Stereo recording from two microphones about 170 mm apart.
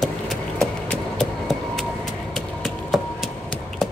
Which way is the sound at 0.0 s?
Centre (ahead or behind).